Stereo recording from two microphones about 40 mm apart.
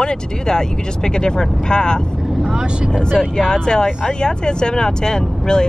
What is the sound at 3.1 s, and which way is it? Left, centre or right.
Speech, centre.